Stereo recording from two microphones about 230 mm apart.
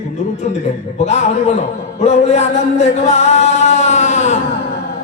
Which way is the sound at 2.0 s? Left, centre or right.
Left.